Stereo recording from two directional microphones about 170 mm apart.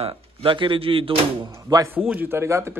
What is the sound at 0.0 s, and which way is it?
Speech, 30° right (ahead or behind).